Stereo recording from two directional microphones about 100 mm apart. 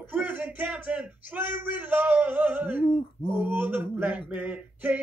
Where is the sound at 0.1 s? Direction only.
15° right (ahead or behind).